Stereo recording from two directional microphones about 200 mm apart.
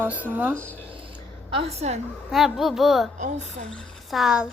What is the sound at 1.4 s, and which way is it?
Speech, 30° right (ahead or behind).